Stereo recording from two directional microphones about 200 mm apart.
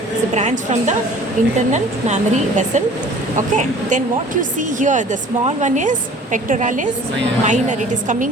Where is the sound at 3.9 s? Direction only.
40° right (ahead or behind).